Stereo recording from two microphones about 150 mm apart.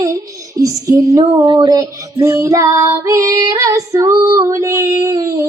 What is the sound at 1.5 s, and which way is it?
Child singing, 30° right (ahead or behind).